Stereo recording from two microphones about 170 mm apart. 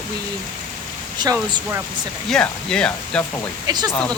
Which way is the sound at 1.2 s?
25° right (ahead or behind).